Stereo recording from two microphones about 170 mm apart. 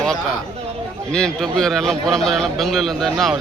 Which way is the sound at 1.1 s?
5° left (ahead or behind).